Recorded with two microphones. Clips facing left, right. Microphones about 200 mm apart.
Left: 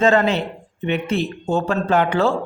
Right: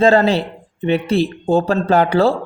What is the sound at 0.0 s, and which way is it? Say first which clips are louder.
Speech: right 4 dB; 35° right (ahead or behind).